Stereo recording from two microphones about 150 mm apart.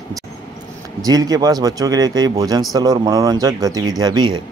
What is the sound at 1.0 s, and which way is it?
Speech, 25° right (ahead or behind).